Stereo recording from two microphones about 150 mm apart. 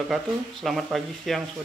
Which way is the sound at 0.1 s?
Centre (ahead or behind).